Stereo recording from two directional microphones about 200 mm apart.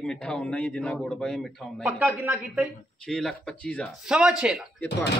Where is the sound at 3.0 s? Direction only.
5° left (ahead or behind).